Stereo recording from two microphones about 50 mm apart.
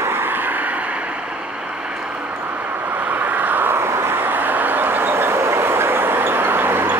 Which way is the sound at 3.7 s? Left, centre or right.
Right.